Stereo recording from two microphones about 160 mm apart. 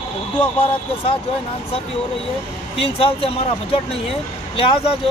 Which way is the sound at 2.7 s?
35° left (ahead or behind).